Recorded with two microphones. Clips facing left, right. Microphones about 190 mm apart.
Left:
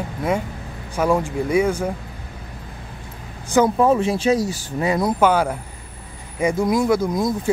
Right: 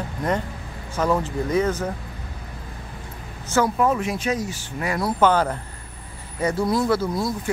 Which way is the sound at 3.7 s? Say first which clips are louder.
Left 5 dB; 30° left (ahead or behind).